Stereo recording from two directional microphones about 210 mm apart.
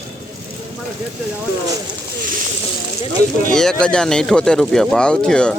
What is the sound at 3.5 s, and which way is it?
Speech, centre (ahead or behind).